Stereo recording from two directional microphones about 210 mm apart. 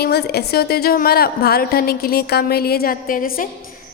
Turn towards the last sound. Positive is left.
turn(degrees=40)  # may be behind; listen again after turning